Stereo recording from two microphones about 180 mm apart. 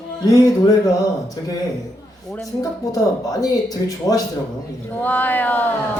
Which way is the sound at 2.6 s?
20° left (ahead or behind).